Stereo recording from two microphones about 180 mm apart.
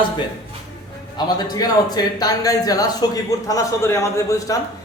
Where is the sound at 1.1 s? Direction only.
20° left (ahead or behind).